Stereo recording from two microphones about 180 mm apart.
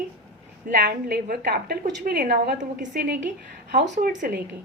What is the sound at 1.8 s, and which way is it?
A woman's voice, 45° right (ahead or behind).